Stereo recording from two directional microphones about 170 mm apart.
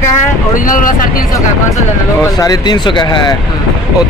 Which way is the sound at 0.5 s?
50° left (ahead or behind).